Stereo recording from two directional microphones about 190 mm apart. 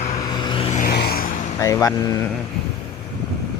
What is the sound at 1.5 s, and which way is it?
Speech, 15° left (ahead or behind).